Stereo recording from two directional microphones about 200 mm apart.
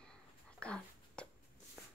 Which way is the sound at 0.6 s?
5° left (ahead or behind).